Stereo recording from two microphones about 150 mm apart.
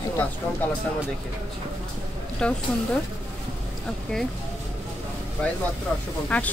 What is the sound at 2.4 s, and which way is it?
Speech, 5° left (ahead or behind).